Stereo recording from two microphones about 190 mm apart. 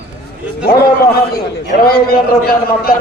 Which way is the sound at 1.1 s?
55° left (ahead or behind).